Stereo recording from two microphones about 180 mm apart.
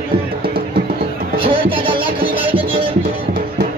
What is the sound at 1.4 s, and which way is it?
Music, 30° right (ahead or behind).